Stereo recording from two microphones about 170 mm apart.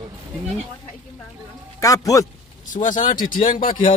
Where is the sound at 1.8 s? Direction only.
20° left (ahead or behind).